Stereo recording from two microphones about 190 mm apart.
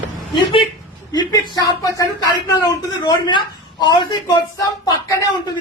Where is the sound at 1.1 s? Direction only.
20° left (ahead or behind).